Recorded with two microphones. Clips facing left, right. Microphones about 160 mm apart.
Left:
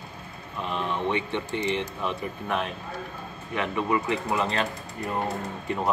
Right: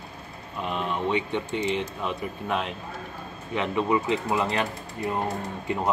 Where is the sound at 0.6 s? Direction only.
15° right (ahead or behind).